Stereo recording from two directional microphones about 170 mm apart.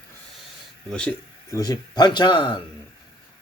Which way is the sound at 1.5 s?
20° left (ahead or behind).